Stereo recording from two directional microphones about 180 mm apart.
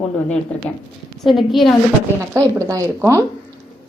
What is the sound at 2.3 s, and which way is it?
Speech, 20° right (ahead or behind).